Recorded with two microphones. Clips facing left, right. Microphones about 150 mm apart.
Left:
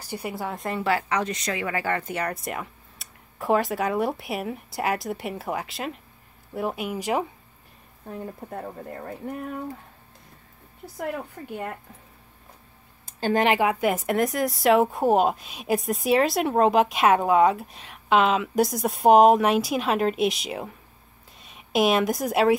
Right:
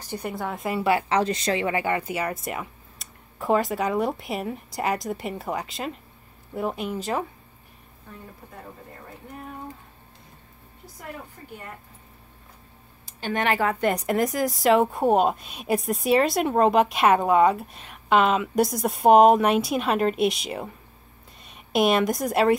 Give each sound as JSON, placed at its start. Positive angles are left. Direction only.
{"t": 0.0, "sound": "speech", "side_deg": 5}
{"t": 0.8, "sound": "speech", "side_deg": -25}
{"t": 8.5, "sound": "speech", "side_deg": 55}
{"t": 11.4, "sound": "speech", "side_deg": 80}
{"t": 13.0, "sound": "a sound", "side_deg": 40}
{"t": 13.4, "sound": "a woman's voice", "side_deg": 20}